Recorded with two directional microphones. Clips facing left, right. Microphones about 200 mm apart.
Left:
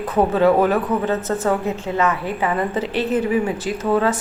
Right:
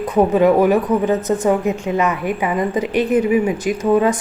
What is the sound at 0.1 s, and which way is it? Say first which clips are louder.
A woman's voice: right 2 dB; 15° right (ahead or behind).